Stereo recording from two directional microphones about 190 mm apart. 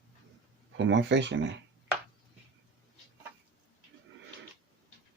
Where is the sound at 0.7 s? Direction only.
70° right (ahead or behind).